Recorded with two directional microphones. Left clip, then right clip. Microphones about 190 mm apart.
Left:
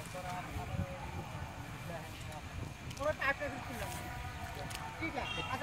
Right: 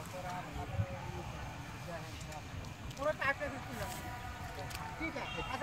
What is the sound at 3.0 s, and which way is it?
Boat, 40° right (ahead or behind).